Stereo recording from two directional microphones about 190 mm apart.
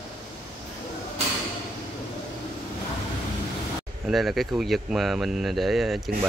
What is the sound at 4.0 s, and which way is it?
Speech, centre (ahead or behind).